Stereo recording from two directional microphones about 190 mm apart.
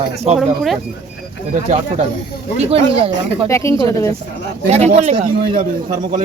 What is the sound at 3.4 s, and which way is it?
Speech, 15° left (ahead or behind).